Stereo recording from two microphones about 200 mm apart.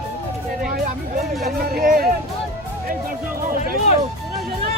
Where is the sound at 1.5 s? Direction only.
45° right (ahead or behind).